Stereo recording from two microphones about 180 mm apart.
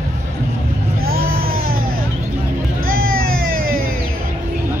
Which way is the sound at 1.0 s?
55° right (ahead or behind).